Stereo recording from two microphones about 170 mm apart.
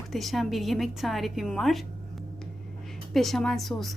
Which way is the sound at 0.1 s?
Centre (ahead or behind).